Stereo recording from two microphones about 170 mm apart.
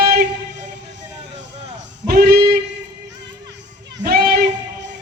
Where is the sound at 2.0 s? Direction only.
65° right (ahead or behind).